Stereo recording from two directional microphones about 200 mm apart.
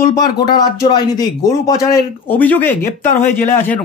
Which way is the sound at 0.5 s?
20° left (ahead or behind).